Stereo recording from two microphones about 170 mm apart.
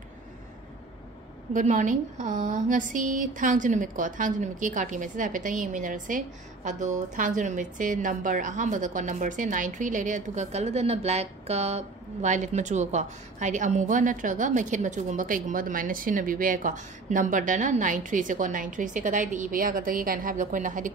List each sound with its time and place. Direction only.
1.5 s speech: 45° right (ahead or behind)